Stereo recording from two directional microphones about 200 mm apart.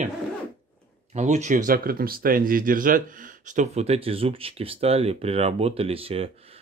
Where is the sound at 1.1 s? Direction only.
35° right (ahead or behind).